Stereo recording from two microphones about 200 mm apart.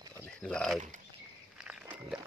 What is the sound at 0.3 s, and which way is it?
Speech, 5° left (ahead or behind).